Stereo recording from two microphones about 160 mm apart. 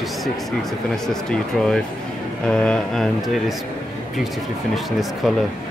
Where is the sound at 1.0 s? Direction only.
5° left (ahead or behind).